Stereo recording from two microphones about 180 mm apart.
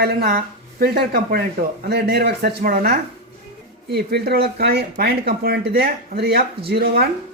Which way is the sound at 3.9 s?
65° right (ahead or behind).